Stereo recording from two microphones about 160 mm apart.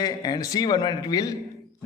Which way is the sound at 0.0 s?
25° left (ahead or behind).